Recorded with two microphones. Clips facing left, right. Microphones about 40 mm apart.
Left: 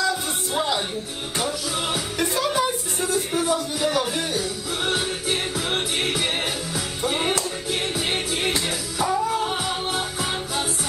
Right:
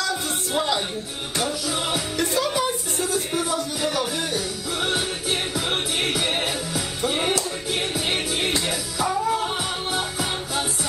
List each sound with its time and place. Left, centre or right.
0.6 s music: centre
2.1 s music: left
3.8 s music: centre
9.0 s music: centre